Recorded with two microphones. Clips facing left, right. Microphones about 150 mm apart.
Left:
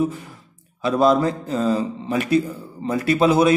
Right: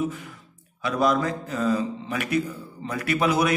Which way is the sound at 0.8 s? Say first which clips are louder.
Left 6 dB; 30° left (ahead or behind).